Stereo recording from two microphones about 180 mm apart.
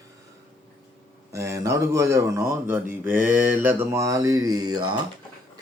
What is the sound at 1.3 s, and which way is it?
A man's voice, 15° right (ahead or behind).